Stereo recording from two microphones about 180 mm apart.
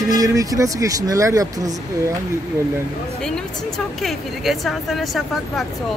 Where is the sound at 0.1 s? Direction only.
20° right (ahead or behind).